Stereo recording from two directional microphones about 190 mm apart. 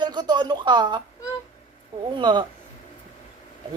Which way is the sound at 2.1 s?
25° right (ahead or behind).